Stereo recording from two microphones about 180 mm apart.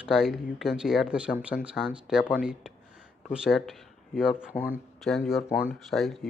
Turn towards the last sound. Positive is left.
turn(degrees=0)  # may be behind; listen again after turning